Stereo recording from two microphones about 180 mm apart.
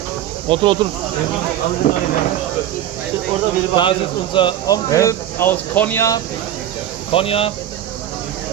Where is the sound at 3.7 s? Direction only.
25° left (ahead or behind).